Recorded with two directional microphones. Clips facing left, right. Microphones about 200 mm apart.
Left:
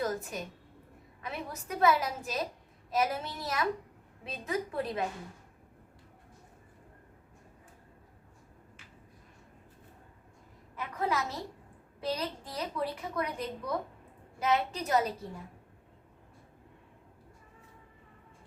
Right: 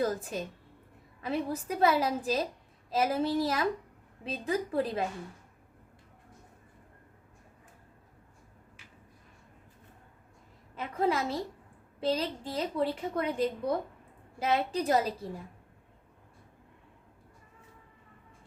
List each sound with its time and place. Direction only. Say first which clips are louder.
0.0 s a woman's voice: right 3 dB; 30° right (ahead or behind)
10.8 s a woman's voice: right 4 dB; 30° right (ahead or behind)